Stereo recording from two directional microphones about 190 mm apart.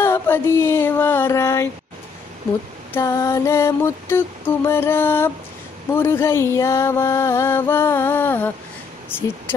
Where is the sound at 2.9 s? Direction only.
15° left (ahead or behind).